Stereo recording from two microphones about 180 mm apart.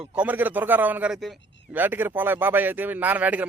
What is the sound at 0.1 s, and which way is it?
A man's voice, 10° right (ahead or behind).